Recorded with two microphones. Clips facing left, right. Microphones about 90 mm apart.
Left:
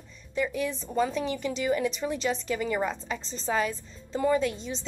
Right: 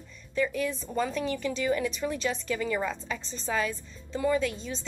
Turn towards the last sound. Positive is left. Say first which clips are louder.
# left 1 dB
turn(degrees=25)  # may be behind; listen again after turning